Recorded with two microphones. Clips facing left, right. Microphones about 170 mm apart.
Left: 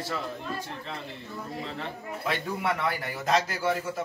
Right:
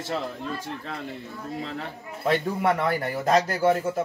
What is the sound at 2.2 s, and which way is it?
Speech, 45° right (ahead or behind).